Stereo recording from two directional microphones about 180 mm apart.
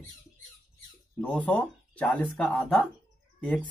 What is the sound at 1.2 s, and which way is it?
Speech, 10° left (ahead or behind).